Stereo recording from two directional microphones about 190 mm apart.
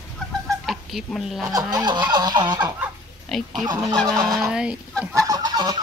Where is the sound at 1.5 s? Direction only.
20° right (ahead or behind).